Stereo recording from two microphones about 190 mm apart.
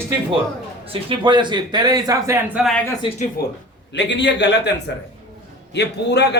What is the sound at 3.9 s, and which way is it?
A man's voice, 70° left (ahead or behind).